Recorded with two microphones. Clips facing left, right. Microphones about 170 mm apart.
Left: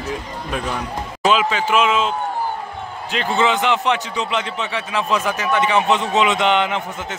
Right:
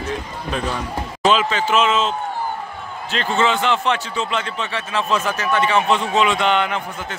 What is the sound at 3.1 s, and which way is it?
A man's voice, 15° left (ahead or behind).